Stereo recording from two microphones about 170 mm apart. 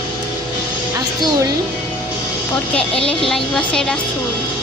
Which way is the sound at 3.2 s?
5° left (ahead or behind).